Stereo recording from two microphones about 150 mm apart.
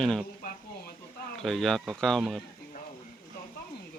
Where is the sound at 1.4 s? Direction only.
5° left (ahead or behind).